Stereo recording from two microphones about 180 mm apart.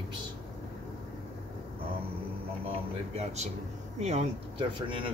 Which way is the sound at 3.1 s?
40° right (ahead or behind).